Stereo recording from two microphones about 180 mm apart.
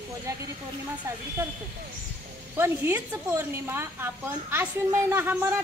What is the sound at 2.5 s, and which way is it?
A woman's voice, 15° right (ahead or behind).